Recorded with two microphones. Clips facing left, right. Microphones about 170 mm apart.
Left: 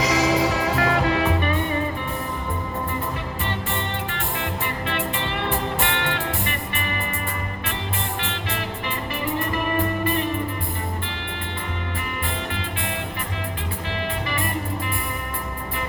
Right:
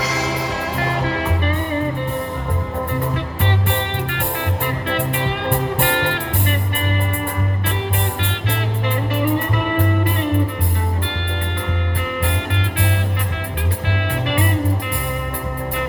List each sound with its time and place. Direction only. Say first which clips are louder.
3.4 s music: right 6 dB; 65° right (ahead or behind)
8.2 s music: right 4 dB; 60° right (ahead or behind)
12.2 s music: right 5 dB; 70° right (ahead or behind)